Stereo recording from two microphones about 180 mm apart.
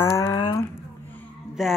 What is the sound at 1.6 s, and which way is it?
Speech, centre (ahead or behind).